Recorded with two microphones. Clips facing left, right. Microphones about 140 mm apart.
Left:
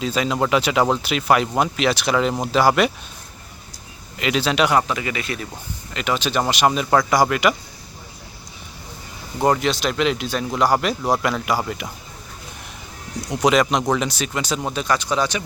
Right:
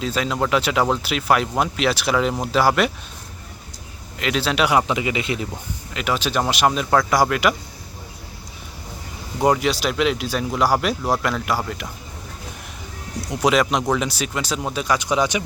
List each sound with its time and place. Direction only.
0.0 s speech: centre (ahead or behind)
4.2 s speech: centre (ahead or behind)
4.9 s speech: 20° right (ahead or behind)
5.9 s speech: 5° right (ahead or behind)
9.4 s speech: 10° right (ahead or behind)
13.2 s speech: 5° right (ahead or behind)